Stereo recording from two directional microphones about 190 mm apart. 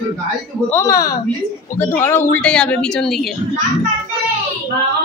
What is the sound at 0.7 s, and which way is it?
A woman's voice, 15° left (ahead or behind).